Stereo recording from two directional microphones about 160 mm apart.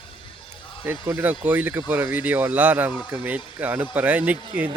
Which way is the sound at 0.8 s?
15° right (ahead or behind).